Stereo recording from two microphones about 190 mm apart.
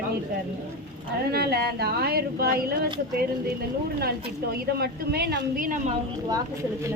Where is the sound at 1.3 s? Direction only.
55° right (ahead or behind).